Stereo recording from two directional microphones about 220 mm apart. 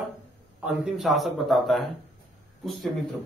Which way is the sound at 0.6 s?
Centre (ahead or behind).